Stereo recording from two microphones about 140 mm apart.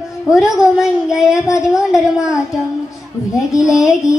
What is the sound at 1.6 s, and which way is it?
Speech, 5° right (ahead or behind).